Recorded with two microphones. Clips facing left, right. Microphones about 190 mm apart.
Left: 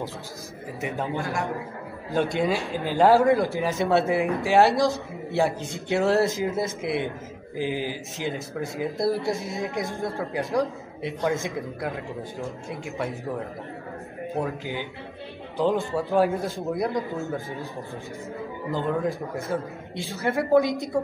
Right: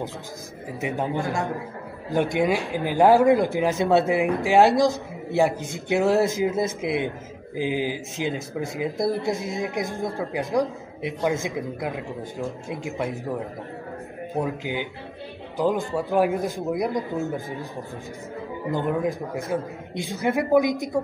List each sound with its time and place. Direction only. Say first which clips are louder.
0.7 s a man's voice: right 3 dB; 15° right (ahead or behind)
14.3 s a man's voice: right 2 dB; 15° right (ahead or behind)
18.7 s a man's voice: right 2 dB; 15° right (ahead or behind)